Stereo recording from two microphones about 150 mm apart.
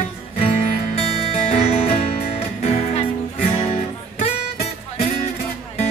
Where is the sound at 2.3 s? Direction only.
45° left (ahead or behind).